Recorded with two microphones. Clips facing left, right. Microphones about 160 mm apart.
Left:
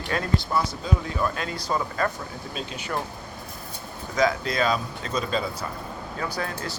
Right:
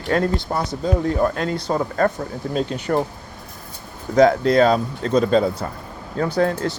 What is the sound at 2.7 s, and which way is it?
Speech, 65° right (ahead or behind).